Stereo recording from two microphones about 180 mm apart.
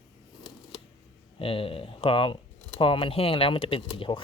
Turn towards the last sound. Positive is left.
turn(degrees=30)  # may be behind; listen again after turning